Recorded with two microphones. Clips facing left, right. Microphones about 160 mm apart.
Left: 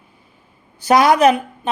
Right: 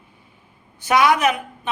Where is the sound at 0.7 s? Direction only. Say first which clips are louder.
Left 4 dB; 35° left (ahead or behind).